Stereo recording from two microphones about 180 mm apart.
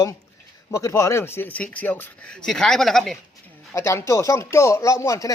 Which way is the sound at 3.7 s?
15° left (ahead or behind).